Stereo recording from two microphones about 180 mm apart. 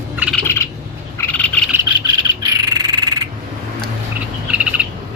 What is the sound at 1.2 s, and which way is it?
Frog, 10° left (ahead or behind).